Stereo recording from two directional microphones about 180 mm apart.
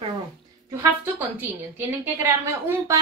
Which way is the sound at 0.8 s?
10° right (ahead or behind).